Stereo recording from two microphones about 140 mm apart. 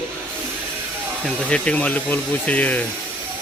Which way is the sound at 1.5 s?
10° left (ahead or behind).